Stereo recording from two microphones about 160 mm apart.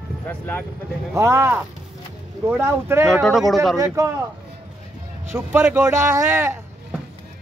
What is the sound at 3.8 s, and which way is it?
Speech, 20° right (ahead or behind).